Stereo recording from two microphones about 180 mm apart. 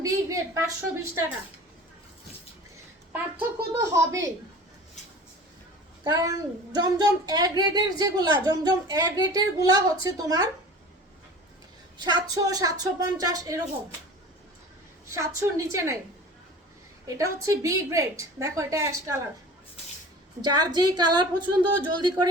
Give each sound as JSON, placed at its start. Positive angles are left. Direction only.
{"t": 0.0, "sound": "a woman's voice", "side_deg": -15}
{"t": 3.1, "sound": "a woman's voice", "side_deg": -15}
{"t": 6.1, "sound": "speech", "side_deg": -20}
{"t": 11.9, "sound": "speech", "side_deg": -25}
{"t": 15.1, "sound": "a woman's voice", "side_deg": -15}
{"t": 17.1, "sound": "a woman's voice", "side_deg": -20}
{"t": 20.4, "sound": "speech", "side_deg": -25}